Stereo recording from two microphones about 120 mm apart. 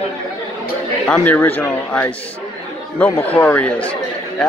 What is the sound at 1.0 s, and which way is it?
Speech, 10° left (ahead or behind).